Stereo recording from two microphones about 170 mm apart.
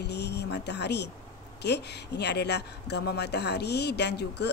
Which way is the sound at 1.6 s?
80° left.